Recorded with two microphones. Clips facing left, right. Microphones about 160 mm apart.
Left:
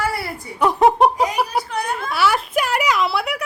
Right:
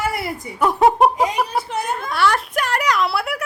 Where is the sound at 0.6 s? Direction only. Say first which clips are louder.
Even; centre (ahead or behind).